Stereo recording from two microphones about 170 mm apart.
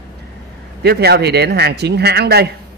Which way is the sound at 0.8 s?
70° right (ahead or behind).